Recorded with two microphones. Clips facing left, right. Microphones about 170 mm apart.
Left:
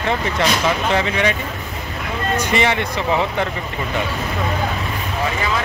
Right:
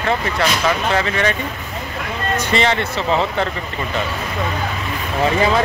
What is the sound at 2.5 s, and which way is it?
Speech, 15° left (ahead or behind).